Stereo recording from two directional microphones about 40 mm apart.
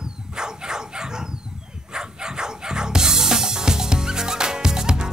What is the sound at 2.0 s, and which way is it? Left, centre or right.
Music, centre.